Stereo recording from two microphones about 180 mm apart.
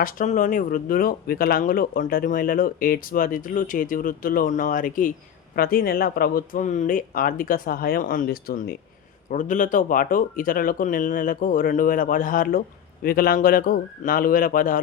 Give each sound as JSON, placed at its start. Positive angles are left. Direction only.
{"t": 0.0, "sound": "speech", "side_deg": 45}
{"t": 9.3, "sound": "speech", "side_deg": 45}